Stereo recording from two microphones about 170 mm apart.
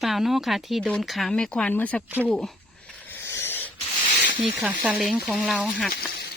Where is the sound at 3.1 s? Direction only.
15° left (ahead or behind).